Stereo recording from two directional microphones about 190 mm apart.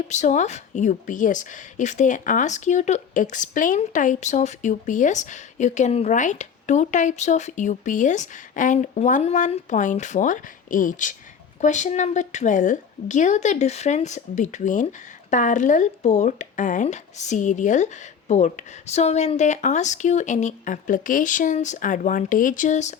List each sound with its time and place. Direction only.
0.1 s a woman's voice: 40° left (ahead or behind)